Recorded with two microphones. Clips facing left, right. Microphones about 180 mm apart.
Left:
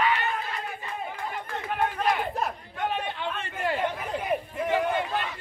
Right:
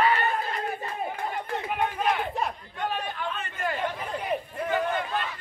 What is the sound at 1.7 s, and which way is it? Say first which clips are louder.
Music: left 1 dB; 5° right (ahead or behind).